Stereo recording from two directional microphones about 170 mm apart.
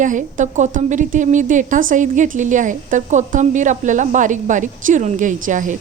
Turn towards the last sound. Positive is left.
turn(degrees=-50)  # may be behind; listen again after turning